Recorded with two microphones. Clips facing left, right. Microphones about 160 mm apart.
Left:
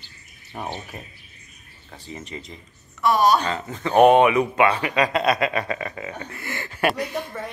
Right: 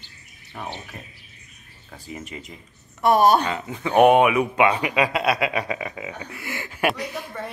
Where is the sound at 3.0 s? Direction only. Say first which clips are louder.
Right 2 dB; 55° right (ahead or behind).